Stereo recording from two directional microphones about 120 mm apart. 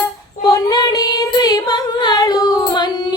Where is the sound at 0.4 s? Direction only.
30° left (ahead or behind).